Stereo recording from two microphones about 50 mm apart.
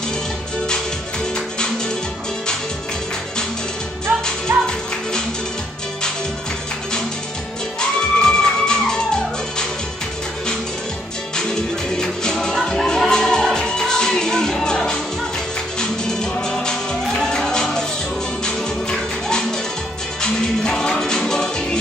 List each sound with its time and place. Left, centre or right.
4.5 s music: right
7.8 s music: centre
12.0 s music: centre